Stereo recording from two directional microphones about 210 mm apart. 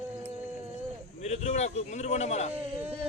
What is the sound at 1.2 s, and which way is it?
Speech, 30° left (ahead or behind).